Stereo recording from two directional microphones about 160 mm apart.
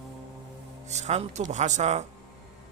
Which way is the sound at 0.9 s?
45° right (ahead or behind).